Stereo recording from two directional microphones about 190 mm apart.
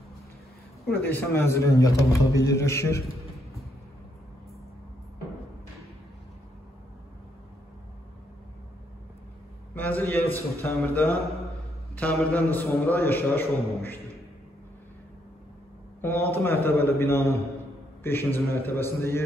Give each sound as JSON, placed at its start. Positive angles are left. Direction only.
{"t": 1.3, "sound": "a man's voice", "side_deg": 15}
{"t": 9.8, "sound": "a man's voice", "side_deg": 10}
{"t": 16.0, "sound": "a man's voice", "side_deg": 10}